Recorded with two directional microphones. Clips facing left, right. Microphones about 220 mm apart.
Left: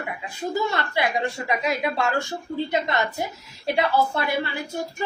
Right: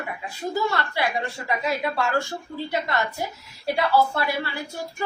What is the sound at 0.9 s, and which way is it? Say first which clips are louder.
Speech: left 2 dB; 20° left (ahead or behind).